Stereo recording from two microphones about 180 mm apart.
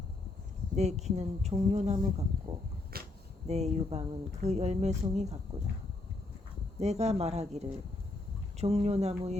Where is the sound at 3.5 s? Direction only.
35° right (ahead or behind).